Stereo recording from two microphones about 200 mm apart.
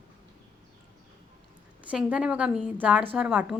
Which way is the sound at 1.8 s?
5° right (ahead or behind).